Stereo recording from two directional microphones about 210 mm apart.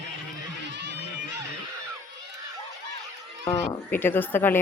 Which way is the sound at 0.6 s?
55° right (ahead or behind).